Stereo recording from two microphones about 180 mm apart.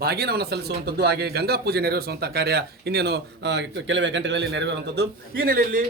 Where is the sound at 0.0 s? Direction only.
60° right (ahead or behind).